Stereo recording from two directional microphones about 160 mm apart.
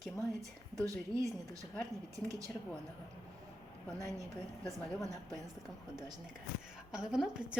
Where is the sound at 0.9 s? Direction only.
20° right (ahead or behind).